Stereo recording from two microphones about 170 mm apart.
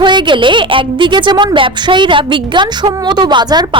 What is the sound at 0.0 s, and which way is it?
A woman's voice, 30° right (ahead or behind).